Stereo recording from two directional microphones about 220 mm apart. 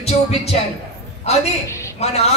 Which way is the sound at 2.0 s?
30° left (ahead or behind).